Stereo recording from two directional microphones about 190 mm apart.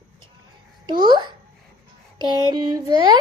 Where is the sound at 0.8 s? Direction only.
25° right (ahead or behind).